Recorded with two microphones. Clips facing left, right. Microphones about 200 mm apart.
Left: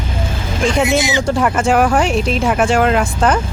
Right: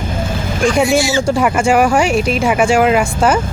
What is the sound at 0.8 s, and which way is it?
Speech, 20° left (ahead or behind).